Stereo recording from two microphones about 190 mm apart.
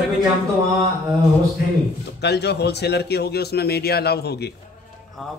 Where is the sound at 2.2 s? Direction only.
60° left (ahead or behind).